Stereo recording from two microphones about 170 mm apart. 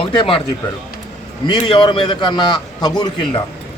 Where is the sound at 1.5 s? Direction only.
25° left (ahead or behind).